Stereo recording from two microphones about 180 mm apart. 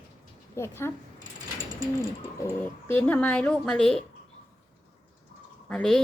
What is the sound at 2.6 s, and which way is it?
A woman's voice, 10° left (ahead or behind).